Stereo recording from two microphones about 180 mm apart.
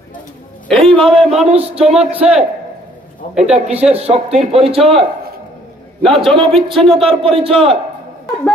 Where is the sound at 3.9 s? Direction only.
35° right (ahead or behind).